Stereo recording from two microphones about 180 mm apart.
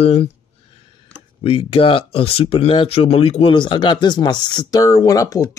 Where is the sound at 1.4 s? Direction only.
30° left (ahead or behind).